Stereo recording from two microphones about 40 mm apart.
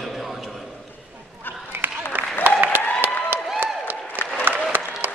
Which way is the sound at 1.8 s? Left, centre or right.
Right.